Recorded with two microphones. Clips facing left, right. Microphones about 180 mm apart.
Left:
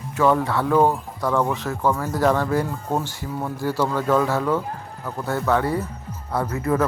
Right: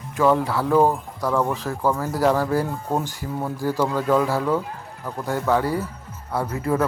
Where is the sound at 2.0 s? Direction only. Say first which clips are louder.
Even; 35° right (ahead or behind).